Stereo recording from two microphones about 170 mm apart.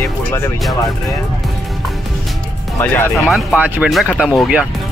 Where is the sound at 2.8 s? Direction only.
10° left (ahead or behind).